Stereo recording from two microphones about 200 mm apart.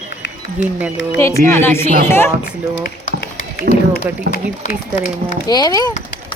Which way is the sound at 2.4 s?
45° left (ahead or behind).